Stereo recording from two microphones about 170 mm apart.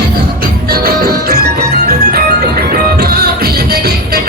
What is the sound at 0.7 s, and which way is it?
Music, 65° right (ahead or behind).